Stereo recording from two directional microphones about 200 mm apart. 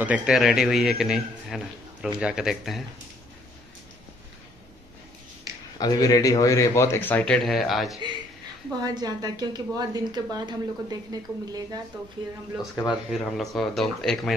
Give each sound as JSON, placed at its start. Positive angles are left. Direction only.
{"t": 0.0, "sound": "a man's voice", "side_deg": -5}
{"t": 5.8, "sound": "speech", "side_deg": 20}
{"t": 8.8, "sound": "a woman's voice", "side_deg": -20}
{"t": 12.7, "sound": "a man's voice", "side_deg": 5}